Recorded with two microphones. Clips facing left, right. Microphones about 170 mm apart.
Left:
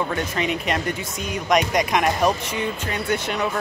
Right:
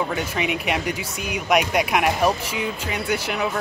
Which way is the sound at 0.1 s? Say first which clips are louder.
Left 1 dB; 10° right (ahead or behind).